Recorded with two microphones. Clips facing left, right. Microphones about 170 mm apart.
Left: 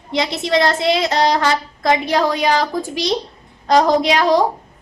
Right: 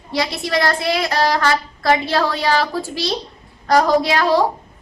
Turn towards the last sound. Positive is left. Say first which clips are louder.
# left 1 dB
turn(degrees=20)  # may be behind; listen again after turning